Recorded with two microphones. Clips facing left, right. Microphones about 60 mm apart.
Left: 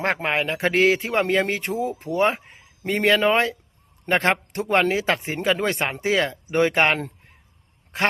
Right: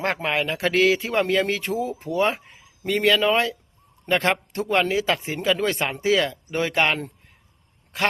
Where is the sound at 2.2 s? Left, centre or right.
Left.